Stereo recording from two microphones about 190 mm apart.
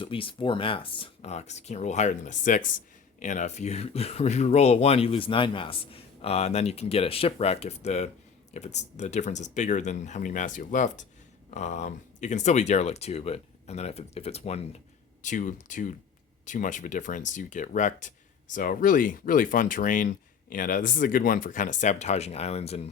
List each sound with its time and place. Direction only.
0.0 s speech: 30° left (ahead or behind)